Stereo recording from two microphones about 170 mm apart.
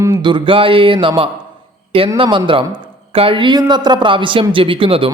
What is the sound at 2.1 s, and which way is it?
Speech, 30° right (ahead or behind).